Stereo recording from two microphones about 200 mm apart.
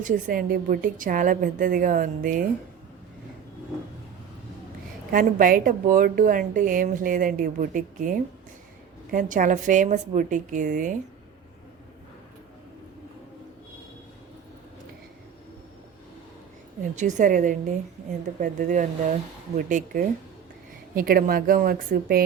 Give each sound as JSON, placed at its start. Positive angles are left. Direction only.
{"t": 0.0, "sound": "a woman's voice", "side_deg": -45}
{"t": 5.1, "sound": "a woman's voice", "side_deg": -45}
{"t": 16.9, "sound": "a woman's voice", "side_deg": -35}